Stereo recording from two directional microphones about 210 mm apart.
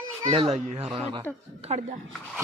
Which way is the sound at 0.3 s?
30° right (ahead or behind).